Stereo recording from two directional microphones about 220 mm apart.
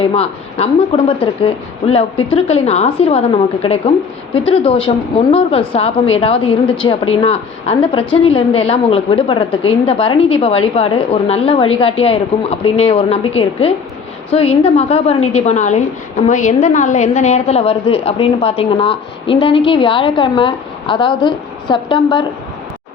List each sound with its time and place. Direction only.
0.0 s a woman's voice: 25° left (ahead or behind)